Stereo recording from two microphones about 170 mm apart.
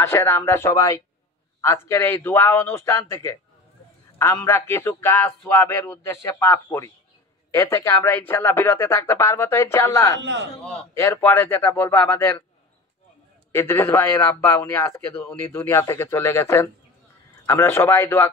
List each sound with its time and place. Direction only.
0.0 s speech: 15° left (ahead or behind)
13.5 s speech: 15° left (ahead or behind)